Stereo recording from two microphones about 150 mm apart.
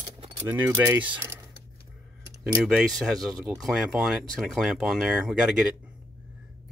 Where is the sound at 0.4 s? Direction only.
15° right (ahead or behind).